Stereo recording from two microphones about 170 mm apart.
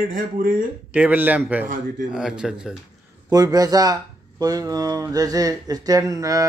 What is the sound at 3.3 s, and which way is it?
Speech, 20° right (ahead or behind).